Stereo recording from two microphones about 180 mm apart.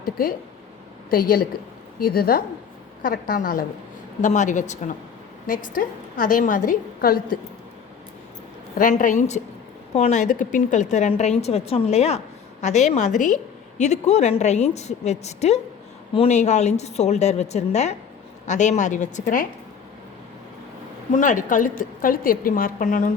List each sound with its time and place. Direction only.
0.0 s a woman's voice: 50° left (ahead or behind)
8.8 s a woman's voice: 45° left (ahead or behind)
21.1 s a woman's voice: 45° left (ahead or behind)